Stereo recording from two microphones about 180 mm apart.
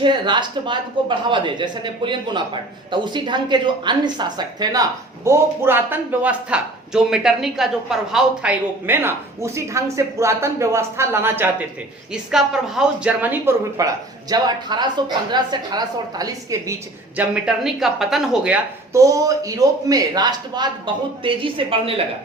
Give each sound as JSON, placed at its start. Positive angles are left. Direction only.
{"t": 0.0, "sound": "a woman's voice", "side_deg": -25}
{"t": 17.2, "sound": "a woman's voice", "side_deg": -5}